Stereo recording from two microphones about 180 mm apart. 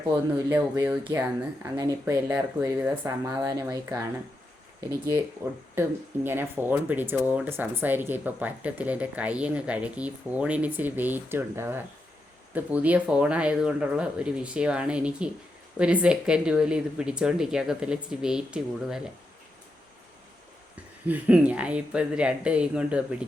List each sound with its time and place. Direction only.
0.1 s speech: 15° right (ahead or behind)
5.4 s speech: 15° right (ahead or behind)
21.1 s speech: 5° right (ahead or behind)